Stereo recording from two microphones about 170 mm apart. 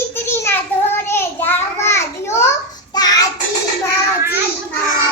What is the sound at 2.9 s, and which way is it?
Child singing, 25° left (ahead or behind).